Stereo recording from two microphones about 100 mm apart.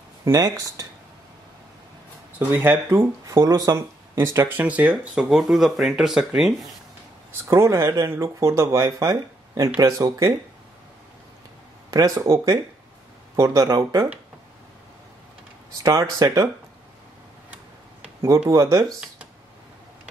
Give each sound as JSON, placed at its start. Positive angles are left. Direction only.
{"t": 0.2, "sound": "speech", "side_deg": -35}
{"t": 2.3, "sound": "speech", "side_deg": -20}
{"t": 3.3, "sound": "speech", "side_deg": -35}
{"t": 7.4, "sound": "speech", "side_deg": -30}
{"t": 11.9, "sound": "speech", "side_deg": -35}
{"t": 15.8, "sound": "speech", "side_deg": -35}
{"t": 18.5, "sound": "speech", "side_deg": -35}